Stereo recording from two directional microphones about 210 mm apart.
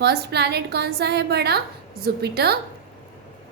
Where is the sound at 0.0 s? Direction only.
50° right (ahead or behind).